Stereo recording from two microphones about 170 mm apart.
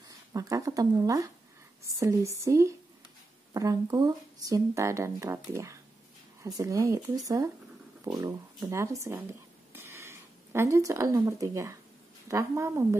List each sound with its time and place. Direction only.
0.3 s speech: 20° right (ahead or behind)
8.2 s speech: 20° right (ahead or behind)
9.7 s a sound: 15° right (ahead or behind)
12.3 s speech: 15° right (ahead or behind)